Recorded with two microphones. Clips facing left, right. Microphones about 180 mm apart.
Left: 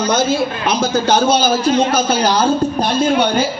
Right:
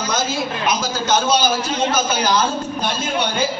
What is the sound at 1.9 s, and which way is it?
Speech, 35° left (ahead or behind).